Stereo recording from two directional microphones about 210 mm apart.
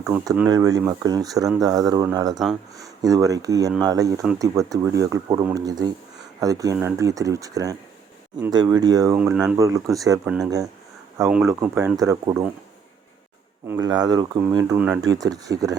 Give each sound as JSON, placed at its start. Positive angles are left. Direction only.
{"t": 0.3, "sound": "speech", "side_deg": -15}
{"t": 10.2, "sound": "speech", "side_deg": -5}
{"t": 13.7, "sound": "speech", "side_deg": -15}